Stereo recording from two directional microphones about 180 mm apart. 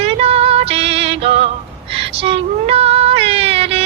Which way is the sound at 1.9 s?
30° right (ahead or behind).